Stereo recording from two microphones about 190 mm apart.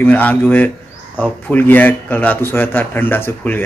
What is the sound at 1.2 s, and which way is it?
Speech, 10° left (ahead or behind).